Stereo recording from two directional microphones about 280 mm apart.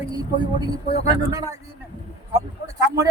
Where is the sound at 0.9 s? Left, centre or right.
Centre.